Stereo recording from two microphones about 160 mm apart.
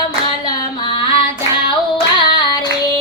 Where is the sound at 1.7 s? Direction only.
30° left (ahead or behind).